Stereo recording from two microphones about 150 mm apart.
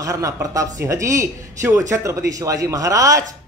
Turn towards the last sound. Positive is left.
turn(degrees=-20)  # may be behind; listen again after turning